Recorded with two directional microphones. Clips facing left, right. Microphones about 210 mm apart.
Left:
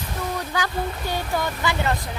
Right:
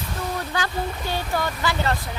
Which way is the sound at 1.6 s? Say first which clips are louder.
Even; 20° left (ahead or behind).